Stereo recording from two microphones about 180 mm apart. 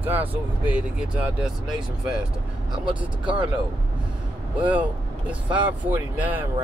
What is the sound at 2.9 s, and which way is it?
Speech, 25° right (ahead or behind).